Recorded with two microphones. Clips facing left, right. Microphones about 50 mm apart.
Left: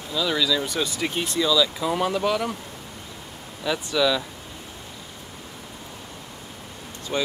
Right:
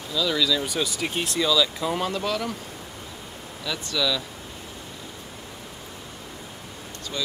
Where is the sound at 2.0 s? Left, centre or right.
Centre.